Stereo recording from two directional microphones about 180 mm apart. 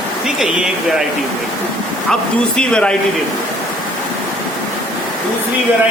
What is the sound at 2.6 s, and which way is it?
Speech, 5° left (ahead or behind).